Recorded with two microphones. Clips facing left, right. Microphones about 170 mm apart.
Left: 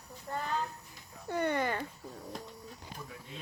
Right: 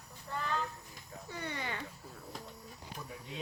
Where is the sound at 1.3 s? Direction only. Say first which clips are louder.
Left 10 dB; 55° left (ahead or behind).